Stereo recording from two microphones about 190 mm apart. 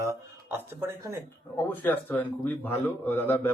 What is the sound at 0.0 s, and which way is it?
Speech, 10° right (ahead or behind).